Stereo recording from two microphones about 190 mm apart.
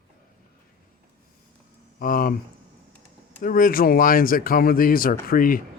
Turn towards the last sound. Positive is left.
turn(degrees=50)  # may be behind; listen again after turning